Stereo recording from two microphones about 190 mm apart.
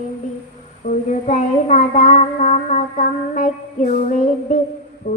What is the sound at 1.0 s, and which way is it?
Child singing, 40° left (ahead or behind).